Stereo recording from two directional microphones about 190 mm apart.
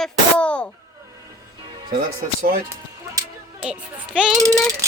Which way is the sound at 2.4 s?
50° right (ahead or behind).